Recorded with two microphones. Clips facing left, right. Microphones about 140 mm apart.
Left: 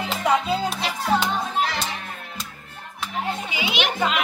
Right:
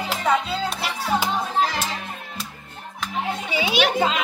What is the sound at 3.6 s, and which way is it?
Children playing, 35° right (ahead or behind).